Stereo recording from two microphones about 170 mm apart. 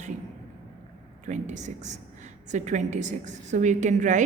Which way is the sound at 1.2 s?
45° right (ahead or behind).